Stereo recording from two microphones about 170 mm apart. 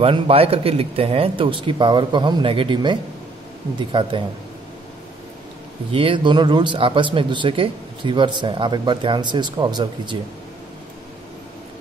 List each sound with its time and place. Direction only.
0.0 s speech: 35° right (ahead or behind)
5.9 s speech: 30° right (ahead or behind)